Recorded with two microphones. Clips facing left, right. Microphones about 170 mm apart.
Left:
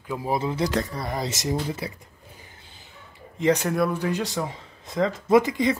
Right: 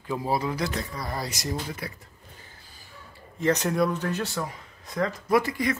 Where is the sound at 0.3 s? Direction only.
25° left (ahead or behind).